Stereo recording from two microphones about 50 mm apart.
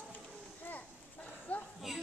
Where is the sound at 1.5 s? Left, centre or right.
Left.